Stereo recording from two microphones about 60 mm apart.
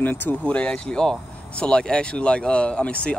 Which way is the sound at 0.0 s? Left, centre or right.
Left.